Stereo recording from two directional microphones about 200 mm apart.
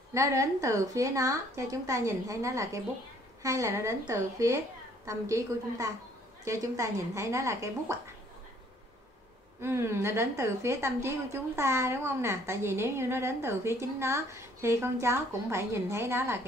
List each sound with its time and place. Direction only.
0.1 s a woman's voice: 15° right (ahead or behind)
9.6 s a woman's voice: 10° right (ahead or behind)